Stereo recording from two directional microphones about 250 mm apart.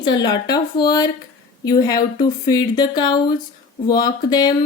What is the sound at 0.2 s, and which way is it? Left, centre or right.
Speech, centre.